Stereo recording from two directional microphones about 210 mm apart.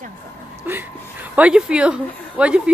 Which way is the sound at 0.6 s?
10° right (ahead or behind).